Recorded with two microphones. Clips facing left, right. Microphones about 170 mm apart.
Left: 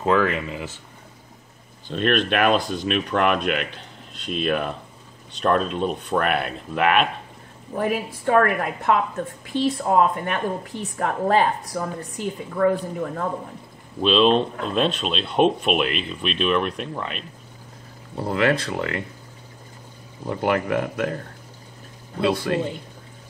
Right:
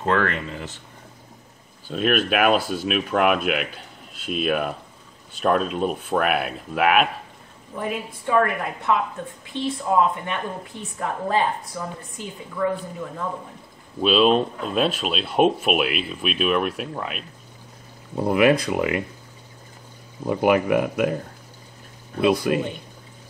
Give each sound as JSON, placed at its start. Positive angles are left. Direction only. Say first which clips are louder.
{"t": 0.0, "sound": "speech", "louder": "left 2 dB", "side_deg": 5}
{"t": 1.9, "sound": "speech", "louder": "even", "side_deg": -5}
{"t": 7.7, "sound": "a woman's voice", "louder": "left 4 dB", "side_deg": 65}
{"t": 13.9, "sound": "speech", "louder": "even", "side_deg": -5}
{"t": 18.1, "sound": "speech", "louder": "right 4 dB", "side_deg": -15}
{"t": 20.2, "sound": "speech", "louder": "right 4 dB", "side_deg": -15}
{"t": 22.5, "sound": "speech", "louder": "right 1 dB", "side_deg": -15}